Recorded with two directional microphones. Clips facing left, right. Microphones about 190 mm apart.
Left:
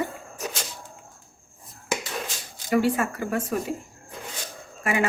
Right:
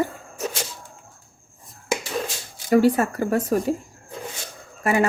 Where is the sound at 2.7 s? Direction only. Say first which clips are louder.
Right 5 dB; 40° right (ahead or behind).